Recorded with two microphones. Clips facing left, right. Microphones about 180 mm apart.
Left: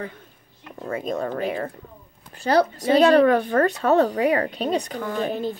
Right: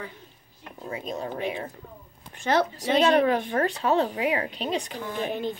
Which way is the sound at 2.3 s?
35° left (ahead or behind).